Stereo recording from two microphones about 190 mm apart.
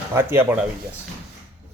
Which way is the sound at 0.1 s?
10° right (ahead or behind).